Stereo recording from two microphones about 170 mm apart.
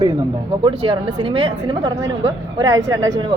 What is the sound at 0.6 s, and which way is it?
A woman's voice, 30° right (ahead or behind).